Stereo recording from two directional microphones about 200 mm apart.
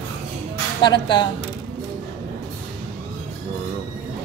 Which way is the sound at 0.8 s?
25° left (ahead or behind).